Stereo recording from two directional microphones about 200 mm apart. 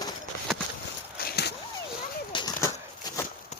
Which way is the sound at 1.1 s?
50° left (ahead or behind).